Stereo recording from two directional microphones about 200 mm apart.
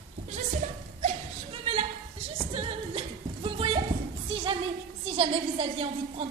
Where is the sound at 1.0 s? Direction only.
30° right (ahead or behind).